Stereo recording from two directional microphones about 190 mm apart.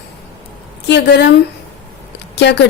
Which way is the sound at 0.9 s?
65° left (ahead or behind).